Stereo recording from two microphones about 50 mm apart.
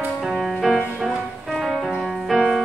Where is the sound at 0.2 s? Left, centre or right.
Centre.